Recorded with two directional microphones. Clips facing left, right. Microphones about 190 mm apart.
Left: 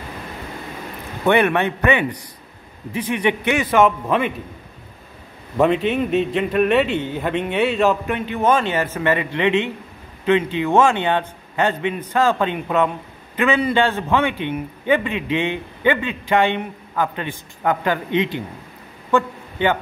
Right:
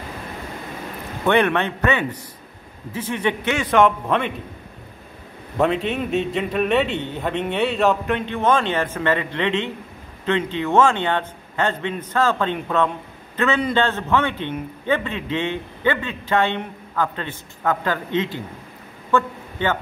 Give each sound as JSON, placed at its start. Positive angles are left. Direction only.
{"t": 1.2, "sound": "a man's voice", "side_deg": 10}
{"t": 5.6, "sound": "a man's voice", "side_deg": 0}